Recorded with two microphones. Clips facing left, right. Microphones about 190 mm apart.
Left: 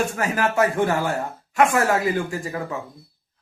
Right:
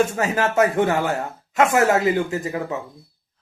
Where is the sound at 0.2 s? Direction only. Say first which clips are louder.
Right 2 dB; 25° right (ahead or behind).